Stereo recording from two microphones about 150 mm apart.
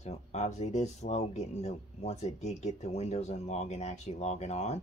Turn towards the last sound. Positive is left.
turn(degrees=45)  # may be behind; listen again after turning